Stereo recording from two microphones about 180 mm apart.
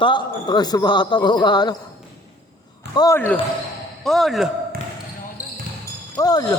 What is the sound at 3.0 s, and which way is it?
Speech, 15° left (ahead or behind).